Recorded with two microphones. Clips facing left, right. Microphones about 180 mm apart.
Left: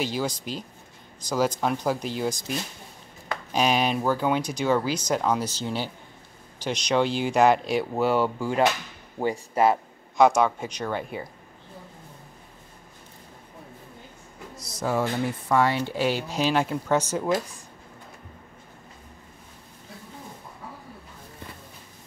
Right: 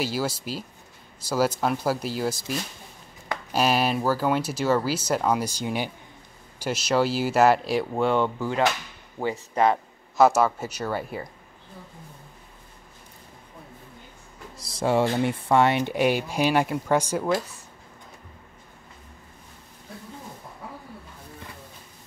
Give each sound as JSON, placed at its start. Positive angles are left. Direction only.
{"t": 0.0, "sound": "speech", "side_deg": -5}
{"t": 3.5, "sound": "speech", "side_deg": -5}
{"t": 10.1, "sound": "speech", "side_deg": -5}
{"t": 14.6, "sound": "speech", "side_deg": -30}